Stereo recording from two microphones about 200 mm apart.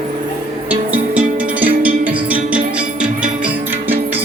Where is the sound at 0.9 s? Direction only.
5° right (ahead or behind).